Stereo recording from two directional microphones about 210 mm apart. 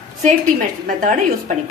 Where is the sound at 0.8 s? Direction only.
40° right (ahead or behind).